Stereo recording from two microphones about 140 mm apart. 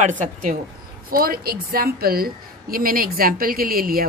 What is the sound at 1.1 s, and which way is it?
A woman's voice, 90° right.